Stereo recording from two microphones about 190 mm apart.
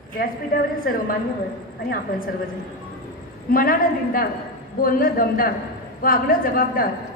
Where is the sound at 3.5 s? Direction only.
50° left (ahead or behind).